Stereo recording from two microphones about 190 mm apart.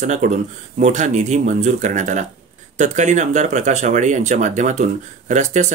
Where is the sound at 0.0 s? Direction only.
40° right (ahead or behind).